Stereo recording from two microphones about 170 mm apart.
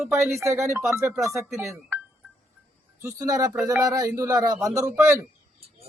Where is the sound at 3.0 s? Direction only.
15° right (ahead or behind).